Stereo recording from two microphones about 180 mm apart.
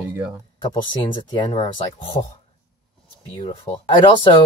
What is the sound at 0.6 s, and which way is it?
Speech, 25° left (ahead or behind).